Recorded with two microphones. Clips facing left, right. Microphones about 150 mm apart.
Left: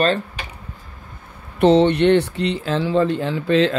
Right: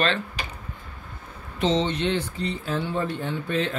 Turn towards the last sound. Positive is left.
turn(degrees=90)